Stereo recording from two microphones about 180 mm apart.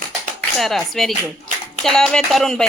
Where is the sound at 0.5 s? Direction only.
Centre (ahead or behind).